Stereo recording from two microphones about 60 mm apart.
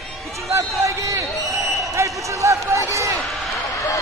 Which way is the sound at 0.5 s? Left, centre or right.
Right.